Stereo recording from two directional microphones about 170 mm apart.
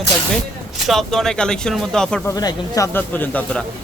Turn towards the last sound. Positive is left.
turn(degrees=5)  # may be behind; listen again after turning